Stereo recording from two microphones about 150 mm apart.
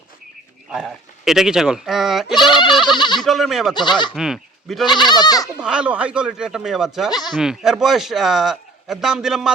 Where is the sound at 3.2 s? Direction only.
Centre (ahead or behind).